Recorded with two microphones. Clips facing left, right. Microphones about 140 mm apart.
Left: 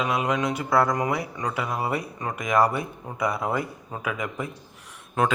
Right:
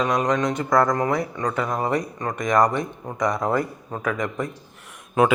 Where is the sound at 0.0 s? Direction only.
5° left (ahead or behind).